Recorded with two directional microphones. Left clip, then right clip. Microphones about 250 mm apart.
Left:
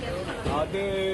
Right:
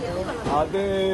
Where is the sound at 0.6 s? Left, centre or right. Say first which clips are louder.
Right 5 dB; right.